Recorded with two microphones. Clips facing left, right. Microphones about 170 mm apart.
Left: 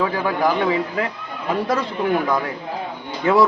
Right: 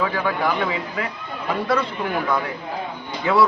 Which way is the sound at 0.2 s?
40° left (ahead or behind).